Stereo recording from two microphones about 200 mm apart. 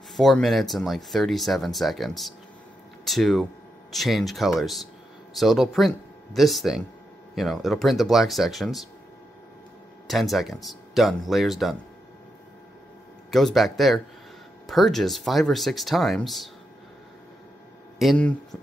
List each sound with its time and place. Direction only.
0.1 s speech: centre (ahead or behind)
10.0 s speech: centre (ahead or behind)
13.3 s speech: centre (ahead or behind)
17.9 s speech: 5° left (ahead or behind)